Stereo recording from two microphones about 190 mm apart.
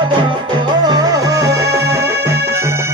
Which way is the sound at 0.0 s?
25° right (ahead or behind).